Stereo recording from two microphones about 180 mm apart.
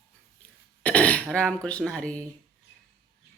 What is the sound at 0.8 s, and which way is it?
Speech, 5° left (ahead or behind).